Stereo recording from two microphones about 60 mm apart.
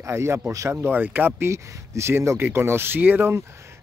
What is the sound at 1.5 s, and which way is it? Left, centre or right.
Speech, right.